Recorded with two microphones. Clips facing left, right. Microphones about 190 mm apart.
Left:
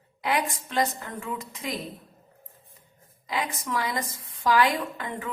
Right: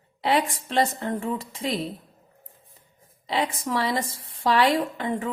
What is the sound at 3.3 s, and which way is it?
A woman's voice, 30° right (ahead or behind).